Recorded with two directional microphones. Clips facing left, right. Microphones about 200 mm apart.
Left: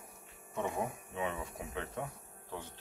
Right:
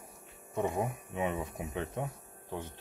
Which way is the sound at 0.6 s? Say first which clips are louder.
Right 4 dB; 15° right (ahead or behind).